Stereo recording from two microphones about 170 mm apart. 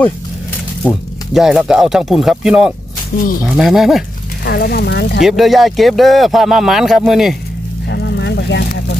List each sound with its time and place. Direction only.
0.8 s speech: centre (ahead or behind)
3.1 s speech: 60° left (ahead or behind)
3.4 s speech: 5° right (ahead or behind)
4.5 s speech: 70° left (ahead or behind)
5.2 s speech: centre (ahead or behind)
7.9 s vehicle: 85° left